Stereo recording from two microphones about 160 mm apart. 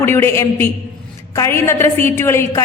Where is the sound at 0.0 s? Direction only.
15° left (ahead or behind).